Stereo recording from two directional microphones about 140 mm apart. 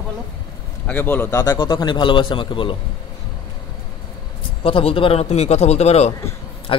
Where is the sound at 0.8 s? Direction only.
15° left (ahead or behind).